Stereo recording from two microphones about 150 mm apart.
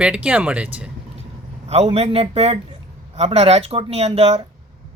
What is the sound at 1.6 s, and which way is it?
Speech, 45° right (ahead or behind).